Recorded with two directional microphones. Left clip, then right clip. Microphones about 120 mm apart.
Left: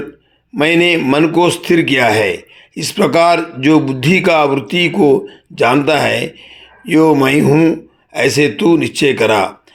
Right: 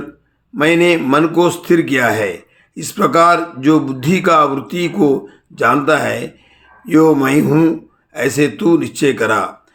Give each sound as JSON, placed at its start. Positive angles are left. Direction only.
{"t": 0.5, "sound": "a man's voice", "side_deg": 20}